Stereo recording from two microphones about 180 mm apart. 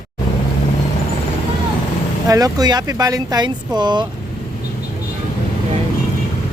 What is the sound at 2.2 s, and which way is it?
Speech, 20° right (ahead or behind).